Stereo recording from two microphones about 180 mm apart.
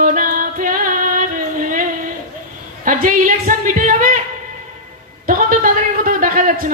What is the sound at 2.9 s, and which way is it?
Music, 50° right (ahead or behind).